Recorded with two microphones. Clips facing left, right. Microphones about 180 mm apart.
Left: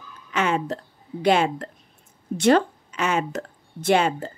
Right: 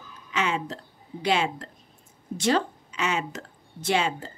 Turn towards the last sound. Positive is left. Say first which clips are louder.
# left 6 dB
turn(degrees=55)  # may be behind; listen again after turning